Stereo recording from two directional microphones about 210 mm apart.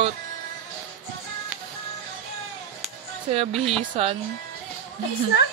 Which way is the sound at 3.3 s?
30° right (ahead or behind).